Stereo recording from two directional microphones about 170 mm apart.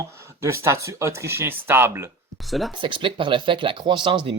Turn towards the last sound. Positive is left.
turn(degrees=-30)  # may be behind; listen again after turning